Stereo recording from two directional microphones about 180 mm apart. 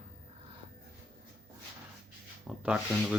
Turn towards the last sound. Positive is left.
turn(degrees=-5)  # may be behind; listen again after turning